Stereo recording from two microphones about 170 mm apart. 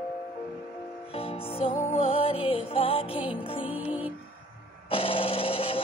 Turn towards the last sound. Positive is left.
turn(degrees=35)  # may be behind; listen again after turning